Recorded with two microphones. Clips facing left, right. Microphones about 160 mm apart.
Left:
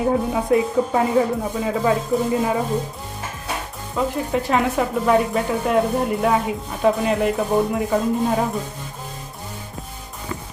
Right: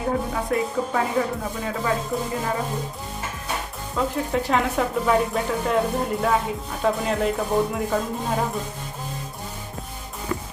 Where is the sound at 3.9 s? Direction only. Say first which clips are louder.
Left 2 dB; 5° left (ahead or behind).